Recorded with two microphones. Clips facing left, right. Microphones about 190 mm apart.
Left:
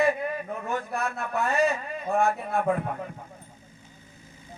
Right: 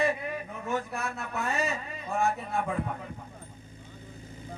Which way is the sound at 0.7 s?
55° left (ahead or behind).